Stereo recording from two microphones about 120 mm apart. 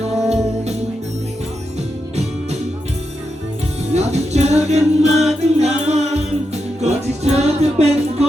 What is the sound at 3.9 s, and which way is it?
Music, 70° right (ahead or behind).